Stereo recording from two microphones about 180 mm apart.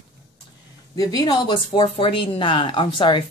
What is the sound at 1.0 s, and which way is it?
Speech, 20° left (ahead or behind).